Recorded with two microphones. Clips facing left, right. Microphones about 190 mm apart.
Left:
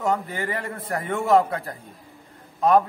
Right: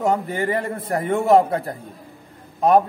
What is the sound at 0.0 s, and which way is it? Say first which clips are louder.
A man's voice: right 4 dB; 25° right (ahead or behind).